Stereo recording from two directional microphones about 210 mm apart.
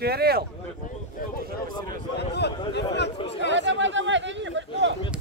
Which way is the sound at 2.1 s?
50° left (ahead or behind).